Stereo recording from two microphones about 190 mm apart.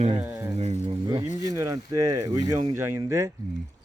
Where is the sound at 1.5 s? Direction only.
20° right (ahead or behind).